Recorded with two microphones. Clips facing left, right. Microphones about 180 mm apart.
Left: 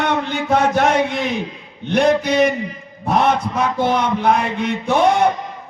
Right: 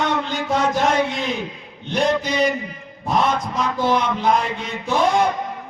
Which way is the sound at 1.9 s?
60° left (ahead or behind).